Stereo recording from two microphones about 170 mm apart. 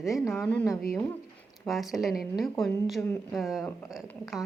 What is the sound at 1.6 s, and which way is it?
Speech, centre (ahead or behind).